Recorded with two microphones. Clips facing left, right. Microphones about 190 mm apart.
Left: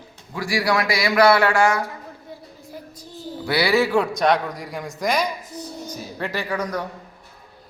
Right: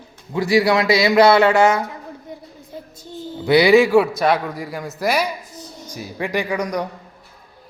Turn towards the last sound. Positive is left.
turn(degrees=-15)  # may be behind; listen again after turning